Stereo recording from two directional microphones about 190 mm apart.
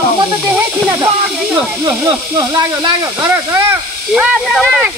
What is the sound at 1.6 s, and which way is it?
Speech, 15° right (ahead or behind).